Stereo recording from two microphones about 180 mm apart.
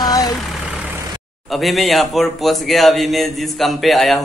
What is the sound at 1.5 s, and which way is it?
Speech, centre (ahead or behind).